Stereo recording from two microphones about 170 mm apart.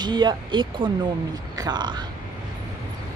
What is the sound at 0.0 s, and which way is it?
Speech, 25° right (ahead or behind).